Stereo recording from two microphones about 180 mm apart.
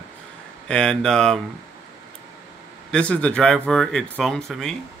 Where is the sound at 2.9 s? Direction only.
5° left (ahead or behind).